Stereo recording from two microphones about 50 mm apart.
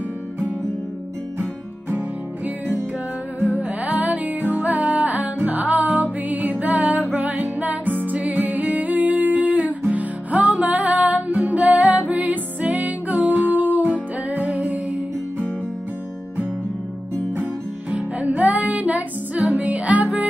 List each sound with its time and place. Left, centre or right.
1.9 s music: right
17.9 s music: right